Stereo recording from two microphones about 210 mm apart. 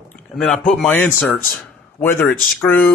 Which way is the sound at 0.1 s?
5° left (ahead or behind).